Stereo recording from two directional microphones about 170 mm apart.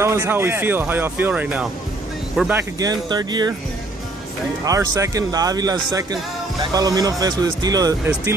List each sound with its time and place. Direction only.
0.0 s speech: 15° right (ahead or behind)
2.8 s speech: 25° right (ahead or behind)
4.6 s speech: 20° right (ahead or behind)